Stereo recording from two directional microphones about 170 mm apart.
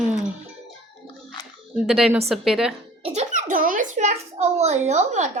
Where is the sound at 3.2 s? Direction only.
50° right (ahead or behind).